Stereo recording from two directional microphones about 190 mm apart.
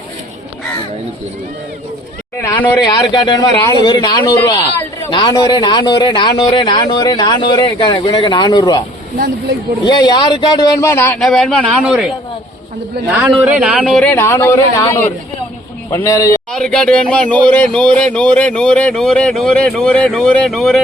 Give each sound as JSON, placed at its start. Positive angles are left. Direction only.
{"t": 2.4, "sound": "speech", "side_deg": 15}
{"t": 9.8, "sound": "speech", "side_deg": 20}
{"t": 13.1, "sound": "speech", "side_deg": -5}
{"t": 16.5, "sound": "speech", "side_deg": 5}